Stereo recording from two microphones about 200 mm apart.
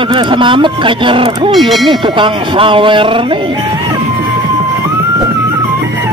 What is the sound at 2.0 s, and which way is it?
Speech, 25° right (ahead or behind).